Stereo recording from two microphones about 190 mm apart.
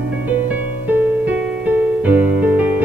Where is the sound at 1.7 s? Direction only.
10° right (ahead or behind).